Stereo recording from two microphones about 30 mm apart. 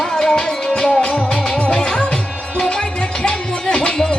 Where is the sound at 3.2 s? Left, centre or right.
Left.